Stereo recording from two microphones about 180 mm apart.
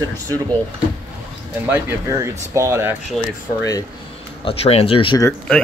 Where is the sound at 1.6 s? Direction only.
10° right (ahead or behind).